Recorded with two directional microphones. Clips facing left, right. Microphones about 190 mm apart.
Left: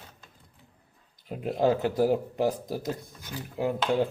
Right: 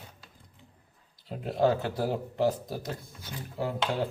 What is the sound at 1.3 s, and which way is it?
Speech, 20° left (ahead or behind).